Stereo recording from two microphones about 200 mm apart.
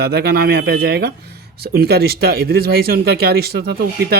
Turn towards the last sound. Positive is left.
turn(degrees=-50)  # may be behind; listen again after turning